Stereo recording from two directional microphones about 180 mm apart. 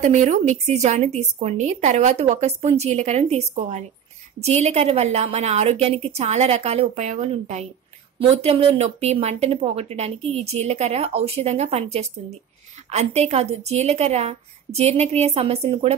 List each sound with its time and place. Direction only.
0.0 s speech: 45° right (ahead or behind)